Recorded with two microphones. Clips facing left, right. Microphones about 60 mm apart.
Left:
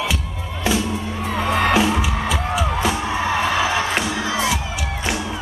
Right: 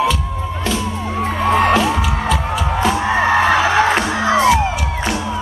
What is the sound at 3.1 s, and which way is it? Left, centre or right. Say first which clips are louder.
Music: right 7 dB; right.